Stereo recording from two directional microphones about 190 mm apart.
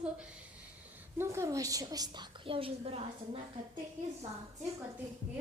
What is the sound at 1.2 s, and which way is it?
A woman's voice, 15° right (ahead or behind).